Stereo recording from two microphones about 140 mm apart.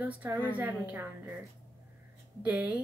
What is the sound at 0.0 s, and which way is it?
A woman's voice, 10° right (ahead or behind).